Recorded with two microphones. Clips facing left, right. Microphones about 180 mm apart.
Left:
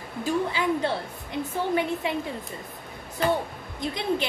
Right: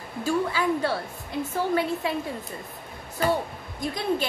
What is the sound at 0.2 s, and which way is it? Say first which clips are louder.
Speech: right 1 dB; 20° left (ahead or behind).